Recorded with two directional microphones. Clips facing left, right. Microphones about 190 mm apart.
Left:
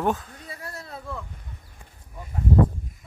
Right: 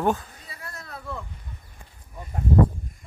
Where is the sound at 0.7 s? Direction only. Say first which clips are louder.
Left 2 dB; 25° left (ahead or behind).